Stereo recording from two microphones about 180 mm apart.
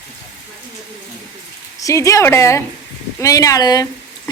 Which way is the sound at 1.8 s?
15° left (ahead or behind).